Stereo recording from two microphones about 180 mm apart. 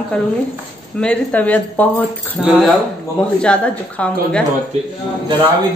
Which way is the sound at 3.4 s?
5° left (ahead or behind).